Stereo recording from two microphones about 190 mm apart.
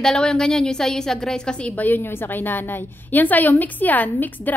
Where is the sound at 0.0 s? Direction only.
5° left (ahead or behind).